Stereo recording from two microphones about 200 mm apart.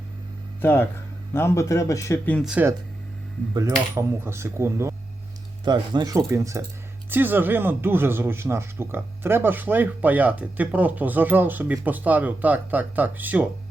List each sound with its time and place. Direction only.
0.6 s speech: 10° left (ahead or behind)
2.5 s speech: 10° right (ahead or behind)